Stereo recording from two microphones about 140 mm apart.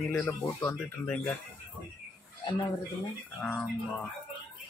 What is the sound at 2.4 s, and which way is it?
Speech, 35° left (ahead or behind).